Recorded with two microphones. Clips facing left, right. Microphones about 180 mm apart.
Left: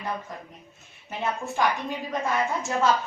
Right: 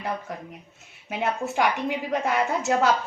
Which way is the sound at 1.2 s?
70° right (ahead or behind).